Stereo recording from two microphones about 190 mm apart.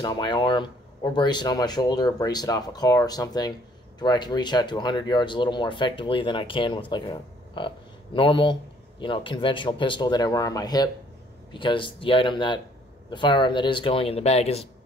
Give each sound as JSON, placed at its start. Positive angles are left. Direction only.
{"t": 0.0, "sound": "speech", "side_deg": 20}